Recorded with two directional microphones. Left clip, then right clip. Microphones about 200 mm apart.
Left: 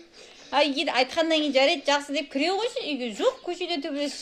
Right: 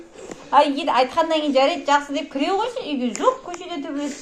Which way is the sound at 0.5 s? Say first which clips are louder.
Right 6 dB; 35° left (ahead or behind).